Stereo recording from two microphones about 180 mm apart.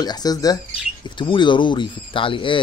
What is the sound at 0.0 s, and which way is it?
Speech, 20° left (ahead or behind).